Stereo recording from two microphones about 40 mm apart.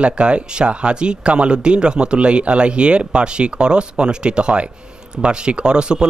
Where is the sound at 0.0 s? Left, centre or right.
Right.